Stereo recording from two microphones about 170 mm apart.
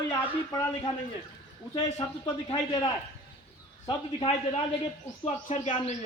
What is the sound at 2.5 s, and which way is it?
A man's voice, 25° left (ahead or behind).